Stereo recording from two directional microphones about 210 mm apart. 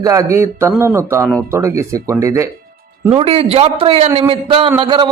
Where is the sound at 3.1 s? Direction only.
25° right (ahead or behind).